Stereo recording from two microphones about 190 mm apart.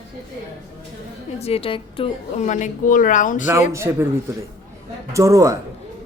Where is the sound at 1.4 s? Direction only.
30° left (ahead or behind).